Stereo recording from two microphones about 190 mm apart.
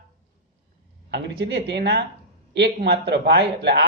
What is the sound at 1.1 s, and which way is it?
Speech, 65° right (ahead or behind).